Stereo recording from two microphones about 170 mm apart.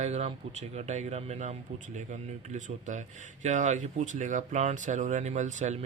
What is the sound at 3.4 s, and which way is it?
Speech, 45° right (ahead or behind).